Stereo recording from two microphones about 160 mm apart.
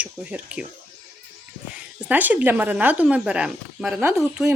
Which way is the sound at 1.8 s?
10° right (ahead or behind).